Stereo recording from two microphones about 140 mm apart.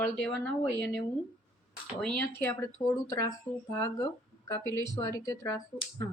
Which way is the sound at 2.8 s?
25° left (ahead or behind).